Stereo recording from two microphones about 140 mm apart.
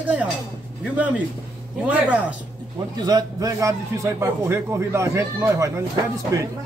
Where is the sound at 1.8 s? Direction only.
10° right (ahead or behind).